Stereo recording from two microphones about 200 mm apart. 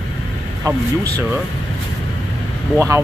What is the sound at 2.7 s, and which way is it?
Speech, 15° right (ahead or behind).